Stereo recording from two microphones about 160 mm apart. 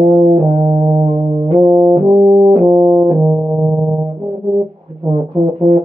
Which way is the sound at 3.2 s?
20° right (ahead or behind).